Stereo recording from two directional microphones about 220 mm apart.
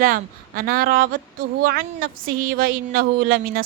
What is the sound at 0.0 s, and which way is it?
A woman's voice, 40° right (ahead or behind).